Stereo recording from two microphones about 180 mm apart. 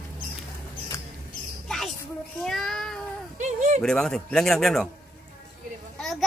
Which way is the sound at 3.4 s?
40° right (ahead or behind).